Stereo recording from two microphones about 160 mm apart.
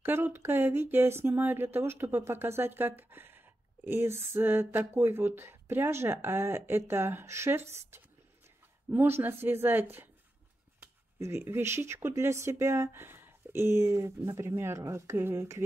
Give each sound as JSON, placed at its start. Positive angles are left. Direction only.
{"t": 0.0, "sound": "speech", "side_deg": -15}
{"t": 8.9, "sound": "speech", "side_deg": -15}